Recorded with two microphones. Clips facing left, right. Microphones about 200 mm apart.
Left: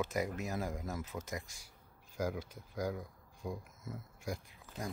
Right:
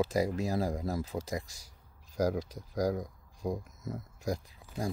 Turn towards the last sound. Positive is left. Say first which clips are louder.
# right 7 dB
turn(degrees=-40)  # may be behind; listen again after turning